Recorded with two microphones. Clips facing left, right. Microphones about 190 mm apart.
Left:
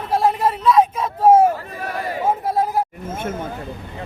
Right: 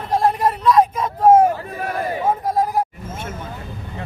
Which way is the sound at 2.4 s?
5° left (ahead or behind).